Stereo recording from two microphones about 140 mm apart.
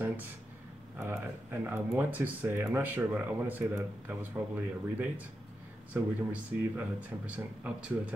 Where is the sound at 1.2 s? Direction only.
15° right (ahead or behind).